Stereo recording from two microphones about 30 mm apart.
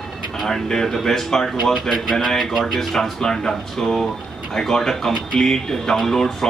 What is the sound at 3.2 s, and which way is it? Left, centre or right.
A man's voice, centre.